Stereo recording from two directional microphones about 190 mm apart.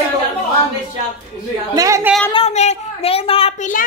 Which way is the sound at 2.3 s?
35° left (ahead or behind).